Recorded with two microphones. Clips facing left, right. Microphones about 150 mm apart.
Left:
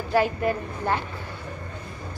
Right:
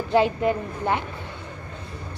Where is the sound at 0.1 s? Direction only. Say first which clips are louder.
Right 2 dB; 20° right (ahead or behind).